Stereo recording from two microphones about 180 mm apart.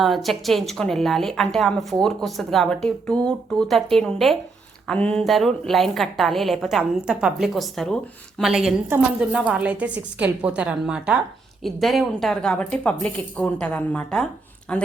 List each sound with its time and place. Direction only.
0.0 s a woman's voice: centre (ahead or behind)